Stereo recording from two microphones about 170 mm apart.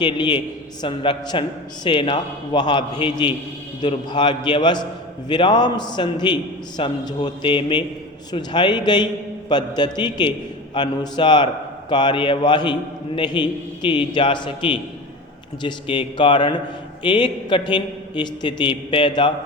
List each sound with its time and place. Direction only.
0.0 s a man's voice: 25° left (ahead or behind)